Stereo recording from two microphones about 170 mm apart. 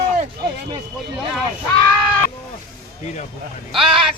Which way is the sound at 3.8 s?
30° right (ahead or behind).